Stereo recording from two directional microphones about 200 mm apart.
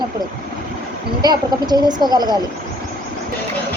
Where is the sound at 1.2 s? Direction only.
20° right (ahead or behind).